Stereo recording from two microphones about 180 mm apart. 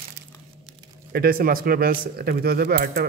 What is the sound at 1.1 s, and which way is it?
Speech, 55° right (ahead or behind).